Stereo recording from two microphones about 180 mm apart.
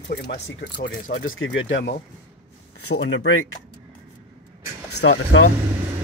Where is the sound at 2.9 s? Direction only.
90° left.